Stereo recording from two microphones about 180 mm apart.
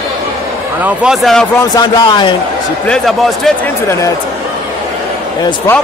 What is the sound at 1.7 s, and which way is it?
Speech, 25° left (ahead or behind).